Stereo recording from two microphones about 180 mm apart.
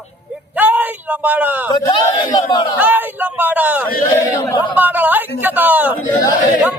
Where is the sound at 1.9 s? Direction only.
25° left (ahead or behind).